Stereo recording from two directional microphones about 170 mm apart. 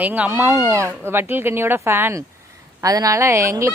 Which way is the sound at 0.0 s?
10° right (ahead or behind).